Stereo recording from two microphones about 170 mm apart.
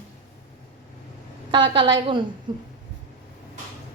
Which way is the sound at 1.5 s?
30° right (ahead or behind).